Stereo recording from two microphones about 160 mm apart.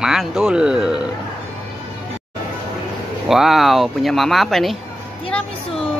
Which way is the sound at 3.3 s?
Centre (ahead or behind).